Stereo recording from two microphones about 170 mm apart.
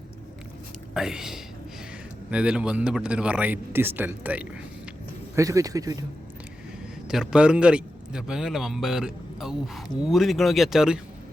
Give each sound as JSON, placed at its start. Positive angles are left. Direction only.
{"t": 0.9, "sound": "a man's voice", "side_deg": -5}
{"t": 5.4, "sound": "speech", "side_deg": -20}
{"t": 7.1, "sound": "a man's voice", "side_deg": -5}